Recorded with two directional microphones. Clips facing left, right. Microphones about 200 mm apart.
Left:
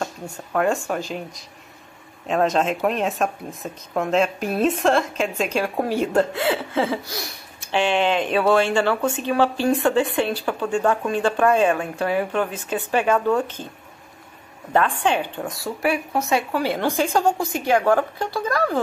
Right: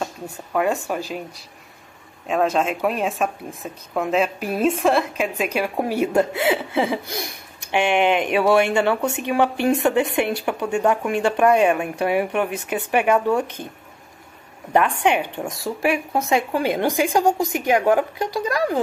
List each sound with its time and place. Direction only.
0.0 s a woman's voice: 5° right (ahead or behind)
2.2 s a woman's voice: 5° right (ahead or behind)
15.0 s a woman's voice: 20° right (ahead or behind)